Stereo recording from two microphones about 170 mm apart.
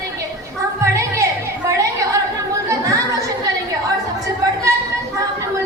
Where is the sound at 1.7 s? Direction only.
20° right (ahead or behind).